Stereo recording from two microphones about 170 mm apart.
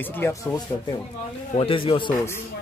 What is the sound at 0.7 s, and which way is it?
Speech, 20° left (ahead or behind).